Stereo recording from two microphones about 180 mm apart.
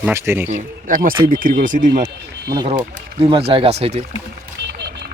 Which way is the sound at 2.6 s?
30° right (ahead or behind).